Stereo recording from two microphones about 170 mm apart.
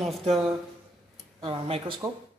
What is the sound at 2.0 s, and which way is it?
Speech, 15° right (ahead or behind).